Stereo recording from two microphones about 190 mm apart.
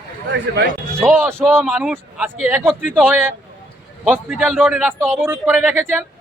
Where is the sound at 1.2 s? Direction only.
15° right (ahead or behind).